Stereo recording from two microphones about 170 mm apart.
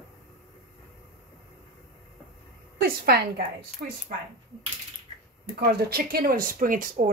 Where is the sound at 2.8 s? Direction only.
65° right (ahead or behind).